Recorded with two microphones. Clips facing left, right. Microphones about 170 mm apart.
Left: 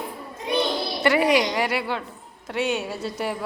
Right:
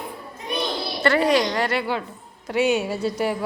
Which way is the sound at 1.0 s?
15° left (ahead or behind).